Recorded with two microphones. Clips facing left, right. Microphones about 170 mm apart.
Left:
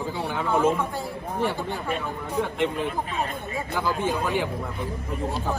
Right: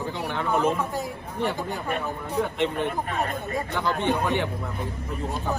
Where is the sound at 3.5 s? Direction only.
5° left (ahead or behind).